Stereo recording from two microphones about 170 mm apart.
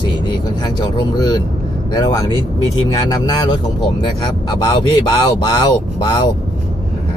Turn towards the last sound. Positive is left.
turn(degrees=25)  # may be behind; listen again after turning